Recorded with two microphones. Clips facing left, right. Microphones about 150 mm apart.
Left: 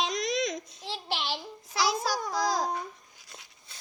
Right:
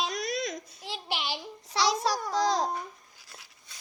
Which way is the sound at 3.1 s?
20° left (ahead or behind).